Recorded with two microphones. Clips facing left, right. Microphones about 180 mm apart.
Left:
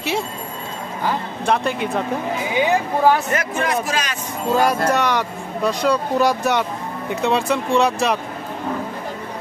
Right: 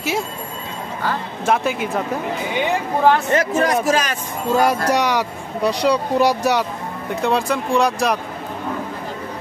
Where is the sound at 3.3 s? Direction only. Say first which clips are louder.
Right 4 dB; 35° right (ahead or behind).